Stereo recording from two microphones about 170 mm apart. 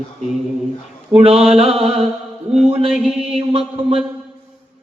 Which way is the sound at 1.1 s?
35° right (ahead or behind).